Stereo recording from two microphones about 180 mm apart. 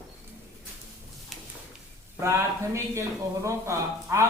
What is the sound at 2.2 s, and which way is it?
Speech, 15° right (ahead or behind).